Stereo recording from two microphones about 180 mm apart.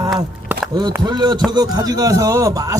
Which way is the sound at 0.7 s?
25° right (ahead or behind).